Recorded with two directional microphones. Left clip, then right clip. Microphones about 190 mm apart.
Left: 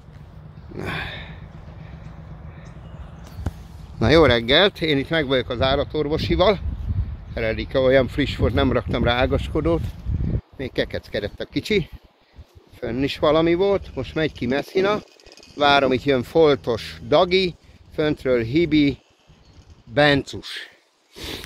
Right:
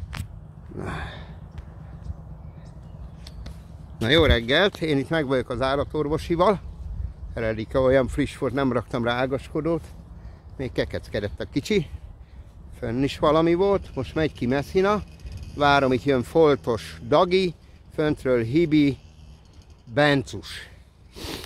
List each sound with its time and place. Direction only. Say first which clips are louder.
0.7 s a sound: left 5 dB; 5° right (ahead or behind)
4.0 s speech: left 4 dB; 20° left (ahead or behind)
4.3 s speech: left 4 dB; 5° left (ahead or behind)
5.0 s speech: left 3 dB; 15° right (ahead or behind)
9.3 s speech: left 4 dB; 10° left (ahead or behind)
10.6 s speech: left 2 dB; 15° right (ahead or behind); by 20.7 s centre (ahead or behind)